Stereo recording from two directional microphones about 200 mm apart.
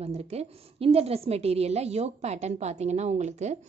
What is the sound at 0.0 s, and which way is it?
A woman's voice, 30° right (ahead or behind).